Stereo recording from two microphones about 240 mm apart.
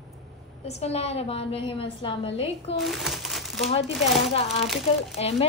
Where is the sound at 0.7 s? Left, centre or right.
Left.